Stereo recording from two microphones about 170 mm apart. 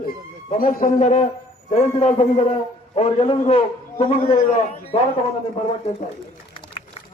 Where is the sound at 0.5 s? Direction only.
55° left (ahead or behind); by 4.4 s 35° left (ahead or behind).